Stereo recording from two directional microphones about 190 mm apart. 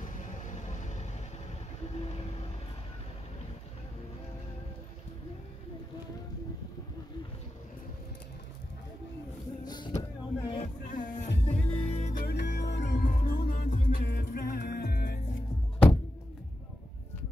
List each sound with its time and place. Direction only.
0.5 s vehicle: 40° left (ahead or behind)
9.7 s vehicle: 20° left (ahead or behind)
10.6 s music: 45° left (ahead or behind)
11.6 s music: 30° left (ahead or behind)
12.1 s music: 50° left (ahead or behind)
12.9 s music: 45° left (ahead or behind)